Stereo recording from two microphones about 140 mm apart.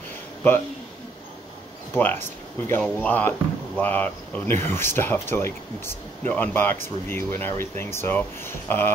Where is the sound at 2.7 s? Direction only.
10° left (ahead or behind).